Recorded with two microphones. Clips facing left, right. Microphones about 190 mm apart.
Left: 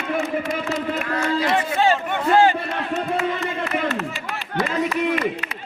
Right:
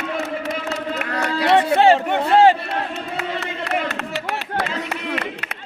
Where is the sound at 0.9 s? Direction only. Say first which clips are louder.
Left 1 dB; 70° right (ahead or behind).